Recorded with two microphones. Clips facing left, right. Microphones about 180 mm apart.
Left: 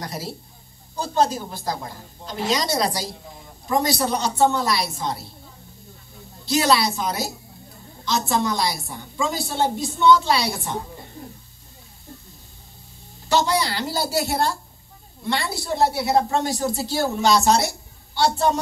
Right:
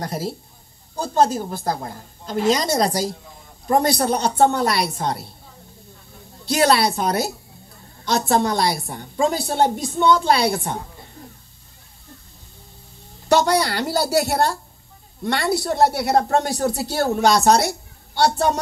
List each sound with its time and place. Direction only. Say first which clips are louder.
0.0 s a woman's voice: right 5 dB; 50° right (ahead or behind)
6.4 s a woman's voice: right 2 dB; 55° right (ahead or behind)
13.3 s a woman's voice: right 4 dB; 60° right (ahead or behind)